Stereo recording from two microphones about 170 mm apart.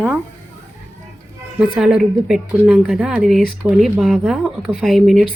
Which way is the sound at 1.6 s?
5° right (ahead or behind).